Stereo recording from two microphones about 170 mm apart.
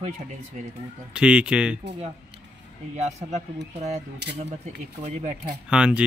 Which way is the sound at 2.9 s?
40° right (ahead or behind).